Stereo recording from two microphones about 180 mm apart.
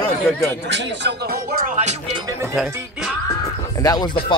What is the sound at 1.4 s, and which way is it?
Speech, 50° right (ahead or behind).